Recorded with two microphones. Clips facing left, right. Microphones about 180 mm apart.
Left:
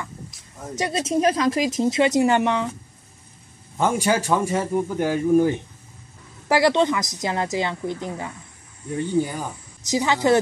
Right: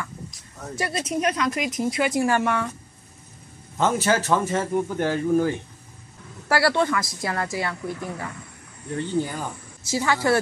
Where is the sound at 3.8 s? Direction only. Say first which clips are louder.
Left 1 dB; 10° left (ahead or behind).